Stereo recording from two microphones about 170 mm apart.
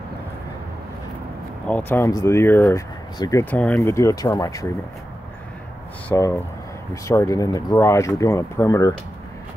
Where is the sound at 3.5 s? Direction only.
10° left (ahead or behind).